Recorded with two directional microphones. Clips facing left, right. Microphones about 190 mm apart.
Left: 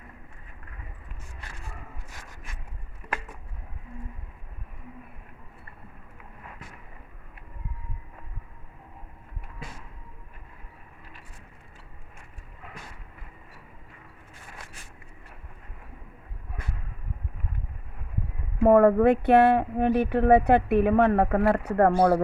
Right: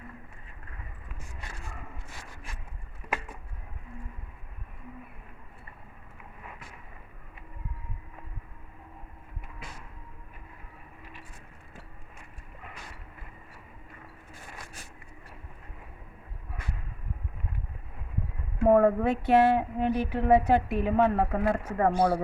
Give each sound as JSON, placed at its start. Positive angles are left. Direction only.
{"t": 18.6, "sound": "speech", "side_deg": 60}